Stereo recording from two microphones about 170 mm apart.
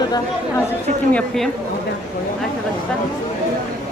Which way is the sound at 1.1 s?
Centre (ahead or behind).